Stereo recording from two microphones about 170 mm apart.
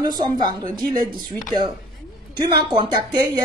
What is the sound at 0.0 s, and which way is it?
Speech, 20° right (ahead or behind).